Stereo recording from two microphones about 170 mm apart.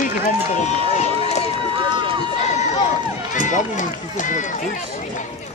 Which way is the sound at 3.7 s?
50° left (ahead or behind).